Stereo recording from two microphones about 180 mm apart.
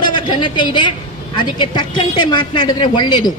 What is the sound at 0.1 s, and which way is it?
A woman's voice, 25° left (ahead or behind).